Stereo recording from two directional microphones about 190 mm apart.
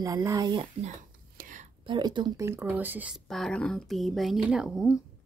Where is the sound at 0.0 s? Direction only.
20° right (ahead or behind).